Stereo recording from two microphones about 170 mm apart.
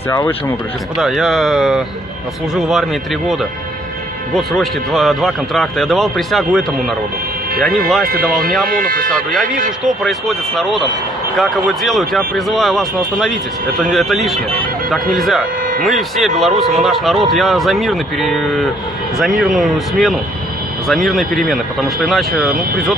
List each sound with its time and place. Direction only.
0.9 s a man's voice: centre (ahead or behind)
8.3 s a man's voice: centre (ahead or behind)
8.6 s speech: 55° right (ahead or behind)
9.1 s a man's voice: centre (ahead or behind)